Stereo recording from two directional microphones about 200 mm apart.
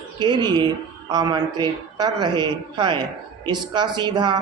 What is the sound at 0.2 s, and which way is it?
A woman's voice, 20° right (ahead or behind).